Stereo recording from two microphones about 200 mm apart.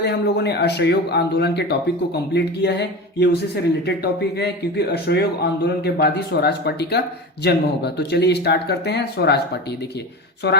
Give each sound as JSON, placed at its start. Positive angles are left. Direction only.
{"t": 0.0, "sound": "speech", "side_deg": 55}